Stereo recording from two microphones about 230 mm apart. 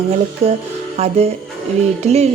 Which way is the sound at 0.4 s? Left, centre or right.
Right.